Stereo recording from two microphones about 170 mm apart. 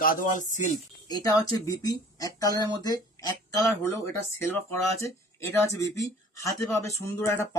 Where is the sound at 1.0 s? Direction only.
25° left (ahead or behind).